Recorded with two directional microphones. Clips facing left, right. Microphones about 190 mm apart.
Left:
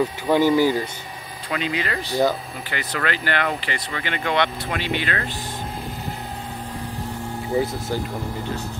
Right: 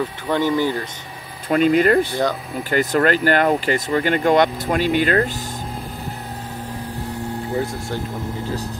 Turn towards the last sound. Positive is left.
turn(degrees=0)  # may be behind; listen again after turning